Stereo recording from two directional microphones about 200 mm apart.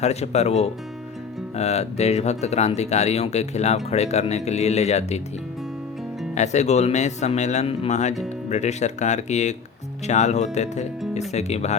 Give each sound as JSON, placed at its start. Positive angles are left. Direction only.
{"t": 0.0, "sound": "speech", "side_deg": 30}
{"t": 6.3, "sound": "speech", "side_deg": 35}